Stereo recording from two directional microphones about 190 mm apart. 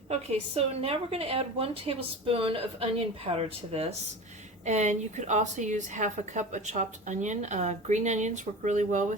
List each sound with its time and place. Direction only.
0.1 s a woman's voice: 30° right (ahead or behind)